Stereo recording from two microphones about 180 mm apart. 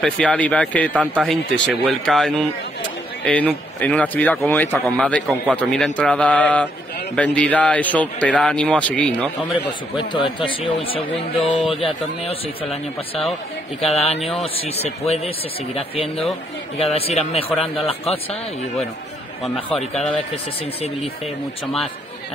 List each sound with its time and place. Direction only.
0.0 s speech: 5° left (ahead or behind)
1.1 s a man's voice: 5° right (ahead or behind)
9.9 s speech: 30° left (ahead or behind)
19.7 s a man's voice: 5° left (ahead or behind)